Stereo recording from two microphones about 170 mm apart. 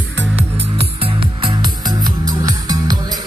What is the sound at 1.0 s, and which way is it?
Music, 30° right (ahead or behind).